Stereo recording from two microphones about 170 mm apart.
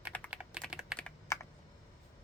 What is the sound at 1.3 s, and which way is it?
Computer keyboard, 15° left (ahead or behind).